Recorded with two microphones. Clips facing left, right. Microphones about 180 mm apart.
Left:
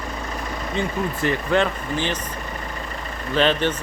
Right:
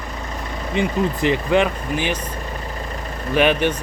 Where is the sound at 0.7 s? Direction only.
15° right (ahead or behind).